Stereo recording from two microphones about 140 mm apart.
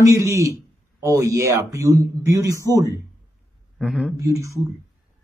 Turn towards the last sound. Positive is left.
turn(degrees=-25)  # may be behind; listen again after turning